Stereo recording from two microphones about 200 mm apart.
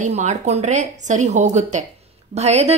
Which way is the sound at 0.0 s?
35° right (ahead or behind).